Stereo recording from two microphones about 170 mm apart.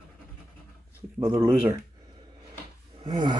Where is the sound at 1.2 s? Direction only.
10° right (ahead or behind).